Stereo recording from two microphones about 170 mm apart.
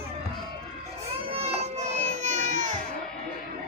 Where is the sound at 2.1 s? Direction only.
45° right (ahead or behind).